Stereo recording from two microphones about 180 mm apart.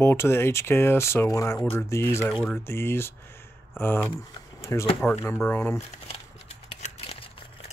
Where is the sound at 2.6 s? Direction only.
15° left (ahead or behind).